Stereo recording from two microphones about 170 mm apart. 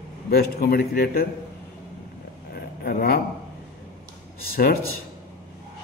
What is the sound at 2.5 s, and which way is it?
Vehicle, 60° left (ahead or behind).